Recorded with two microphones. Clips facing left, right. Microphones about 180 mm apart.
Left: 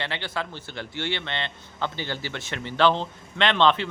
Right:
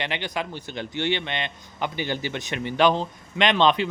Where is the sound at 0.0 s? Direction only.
15° right (ahead or behind).